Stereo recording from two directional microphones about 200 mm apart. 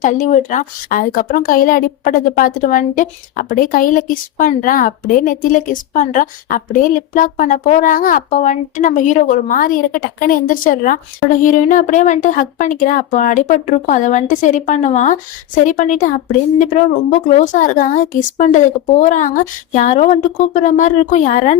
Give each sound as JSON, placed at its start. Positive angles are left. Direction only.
{"t": 0.0, "sound": "a woman's voice", "side_deg": 40}